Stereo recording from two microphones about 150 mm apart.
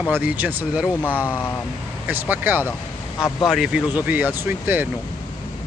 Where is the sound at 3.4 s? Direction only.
Centre (ahead or behind).